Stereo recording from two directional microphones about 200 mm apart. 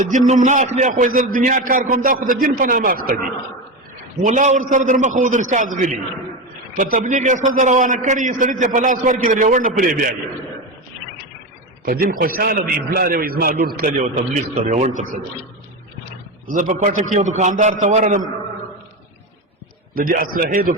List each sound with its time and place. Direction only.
0.0 s a man's voice: 40° right (ahead or behind)
11.9 s a man's voice: 50° right (ahead or behind)
16.5 s a man's voice: 40° right (ahead or behind)
20.0 s a man's voice: 45° right (ahead or behind)